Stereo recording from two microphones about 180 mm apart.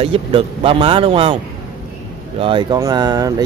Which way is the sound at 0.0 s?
30° right (ahead or behind).